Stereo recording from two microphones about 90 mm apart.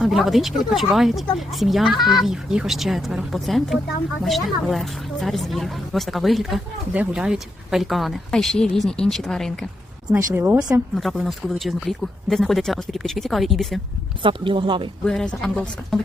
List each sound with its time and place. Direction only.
0.0 s speech: centre (ahead or behind)
6.9 s speech: 15° right (ahead or behind); by 9.5 s 5° left (ahead or behind)
10.1 s speech: 25° right (ahead or behind)
10.9 s speech: centre (ahead or behind)
14.2 s speech: 70° right (ahead or behind)
15.0 s a woman's voice: 10° left (ahead or behind)